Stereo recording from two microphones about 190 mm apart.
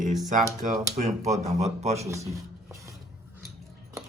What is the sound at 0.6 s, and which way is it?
Speech, 40° right (ahead or behind).